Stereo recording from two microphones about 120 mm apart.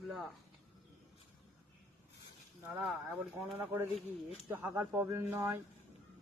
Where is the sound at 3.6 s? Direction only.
20° right (ahead or behind).